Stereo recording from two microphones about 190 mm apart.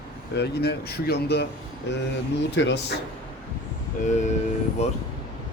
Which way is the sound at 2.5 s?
65° left (ahead or behind).